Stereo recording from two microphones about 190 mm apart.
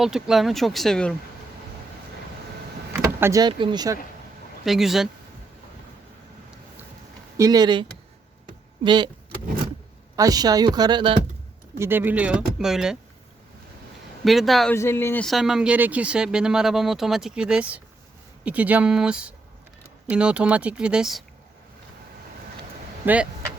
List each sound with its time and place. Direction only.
0.0 s speech: centre (ahead or behind)
2.9 s speech: 15° right (ahead or behind)
4.6 s speech: centre (ahead or behind)
7.3 s speech: 20° right (ahead or behind)
10.2 s speech: 20° right (ahead or behind)
11.8 s speech: 10° right (ahead or behind)
14.3 s speech: centre (ahead or behind)
14.8 s speech: 15° left (ahead or behind)